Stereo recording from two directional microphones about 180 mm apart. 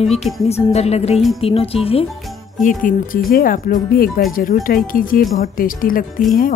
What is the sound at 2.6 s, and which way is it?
Speech, 50° left (ahead or behind).